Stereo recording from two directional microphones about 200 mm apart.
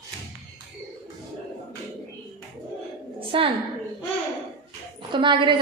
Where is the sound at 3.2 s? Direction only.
25° right (ahead or behind).